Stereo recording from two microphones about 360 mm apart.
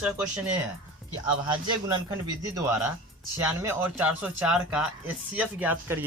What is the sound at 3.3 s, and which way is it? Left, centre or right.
Speech, centre.